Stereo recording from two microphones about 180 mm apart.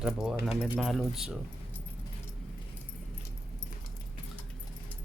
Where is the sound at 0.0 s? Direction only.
5° right (ahead or behind).